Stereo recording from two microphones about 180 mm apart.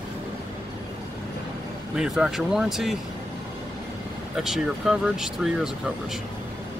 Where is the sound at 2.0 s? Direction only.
5° right (ahead or behind).